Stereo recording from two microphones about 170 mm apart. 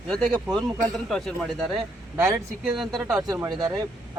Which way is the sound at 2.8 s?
Centre (ahead or behind).